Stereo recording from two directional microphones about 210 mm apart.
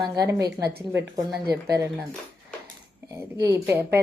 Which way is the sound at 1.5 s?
15° right (ahead or behind).